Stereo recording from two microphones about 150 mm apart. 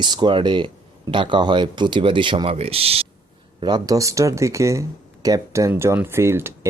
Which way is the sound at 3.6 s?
25° right (ahead or behind).